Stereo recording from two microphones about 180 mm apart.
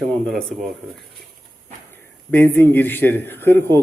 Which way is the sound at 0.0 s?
Centre (ahead or behind).